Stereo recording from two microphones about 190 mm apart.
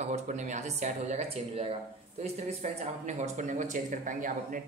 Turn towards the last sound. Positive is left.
turn(degrees=-45)  # may be behind; listen again after turning